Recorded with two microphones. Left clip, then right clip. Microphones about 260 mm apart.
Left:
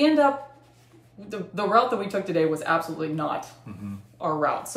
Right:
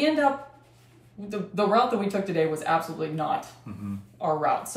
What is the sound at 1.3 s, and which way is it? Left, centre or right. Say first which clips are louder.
A woman's voice: right 1 dB; centre.